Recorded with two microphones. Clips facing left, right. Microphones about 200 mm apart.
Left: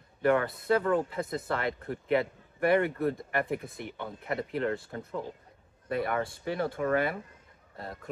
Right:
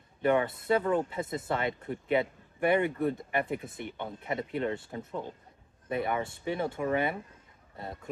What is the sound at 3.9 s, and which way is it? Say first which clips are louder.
Speech: left 1 dB; 20° right (ahead or behind).